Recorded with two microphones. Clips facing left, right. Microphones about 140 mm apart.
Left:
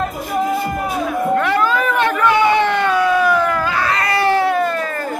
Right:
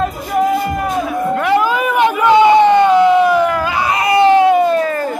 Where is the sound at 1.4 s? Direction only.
10° right (ahead or behind).